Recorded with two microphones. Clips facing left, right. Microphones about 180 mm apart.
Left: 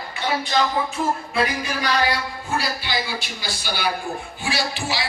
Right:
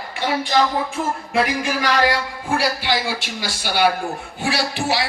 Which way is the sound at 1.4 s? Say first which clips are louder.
Right 3 dB; 90° right.